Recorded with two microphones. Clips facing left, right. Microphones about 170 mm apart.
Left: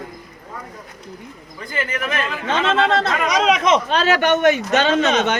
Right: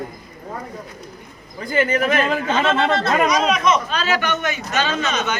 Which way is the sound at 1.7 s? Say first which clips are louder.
Right 7 dB; 35° right (ahead or behind).